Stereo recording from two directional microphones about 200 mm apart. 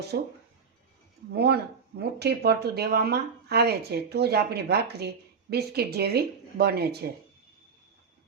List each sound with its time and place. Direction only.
0.1 s speech: 50° right (ahead or behind)
1.3 s speech: 55° right (ahead or behind)